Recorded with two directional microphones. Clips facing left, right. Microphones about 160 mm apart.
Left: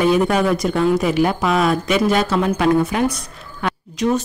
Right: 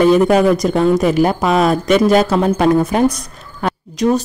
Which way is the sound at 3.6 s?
40° right (ahead or behind).